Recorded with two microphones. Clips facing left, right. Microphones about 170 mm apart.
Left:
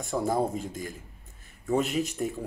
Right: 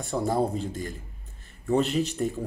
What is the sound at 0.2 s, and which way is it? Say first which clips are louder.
Speech: right 2 dB; 10° left (ahead or behind).